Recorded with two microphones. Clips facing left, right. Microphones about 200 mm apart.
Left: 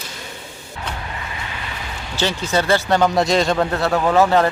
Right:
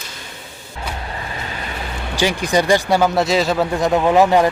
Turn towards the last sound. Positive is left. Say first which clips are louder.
# right 2 dB
turn(degrees=-15)  # may be behind; listen again after turning